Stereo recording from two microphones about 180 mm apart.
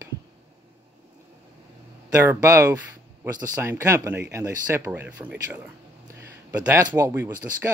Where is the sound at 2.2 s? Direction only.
15° right (ahead or behind).